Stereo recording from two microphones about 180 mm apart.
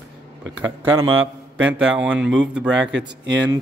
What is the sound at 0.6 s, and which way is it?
Speech, 25° right (ahead or behind).